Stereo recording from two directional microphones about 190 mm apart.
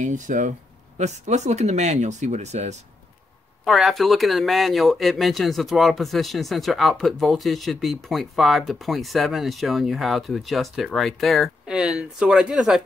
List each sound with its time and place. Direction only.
0.0 s speech: 40° right (ahead or behind)
3.6 s speech: centre (ahead or behind)